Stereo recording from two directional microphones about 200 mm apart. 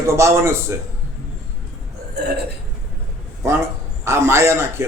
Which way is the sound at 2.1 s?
55° right (ahead or behind).